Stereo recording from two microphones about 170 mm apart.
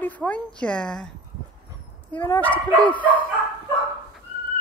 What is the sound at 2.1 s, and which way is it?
Speech, 10° left (ahead or behind).